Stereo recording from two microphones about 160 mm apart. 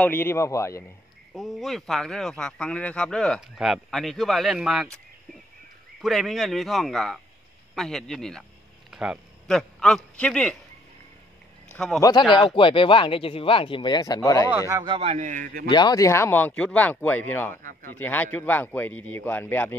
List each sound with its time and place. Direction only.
0.0 s speech: 15° left (ahead or behind)
1.3 s speech: centre (ahead or behind)
5.9 s a man's voice: centre (ahead or behind)
11.7 s a man's voice: 5° left (ahead or behind)
12.0 s speech: 25° left (ahead or behind)
14.7 s speech: 25° right (ahead or behind)
15.0 s a man's voice: 45° right (ahead or behind)
15.7 s speech: 25° left (ahead or behind)